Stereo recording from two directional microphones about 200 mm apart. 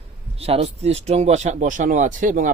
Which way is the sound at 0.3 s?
30° right (ahead or behind).